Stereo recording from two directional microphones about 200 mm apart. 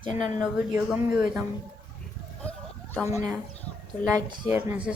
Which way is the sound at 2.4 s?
5° left (ahead or behind).